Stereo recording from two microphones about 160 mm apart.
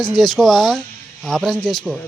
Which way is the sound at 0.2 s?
Centre (ahead or behind).